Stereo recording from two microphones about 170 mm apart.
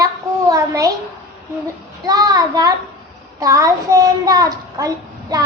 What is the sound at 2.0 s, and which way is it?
A child's voice, 20° right (ahead or behind).